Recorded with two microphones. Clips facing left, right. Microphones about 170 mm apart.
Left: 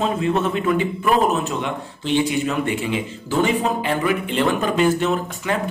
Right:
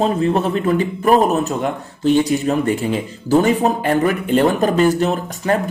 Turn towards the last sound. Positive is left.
turn(degrees=-40)  # may be behind; listen again after turning